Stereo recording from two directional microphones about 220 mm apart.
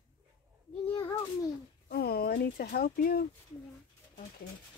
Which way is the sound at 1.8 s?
45° left (ahead or behind).